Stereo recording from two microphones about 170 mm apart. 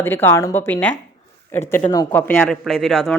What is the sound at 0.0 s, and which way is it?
A man's voice, 10° left (ahead or behind).